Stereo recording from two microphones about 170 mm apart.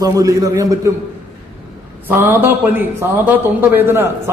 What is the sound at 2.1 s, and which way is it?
A man's voice, 10° right (ahead or behind).